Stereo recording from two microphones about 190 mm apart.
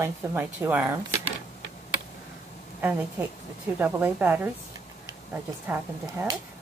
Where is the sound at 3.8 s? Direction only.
10° right (ahead or behind).